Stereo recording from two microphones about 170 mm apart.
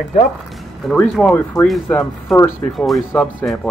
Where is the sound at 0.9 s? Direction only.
5° left (ahead or behind).